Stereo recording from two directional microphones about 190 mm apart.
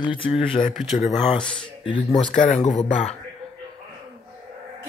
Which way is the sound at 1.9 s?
25° left (ahead or behind).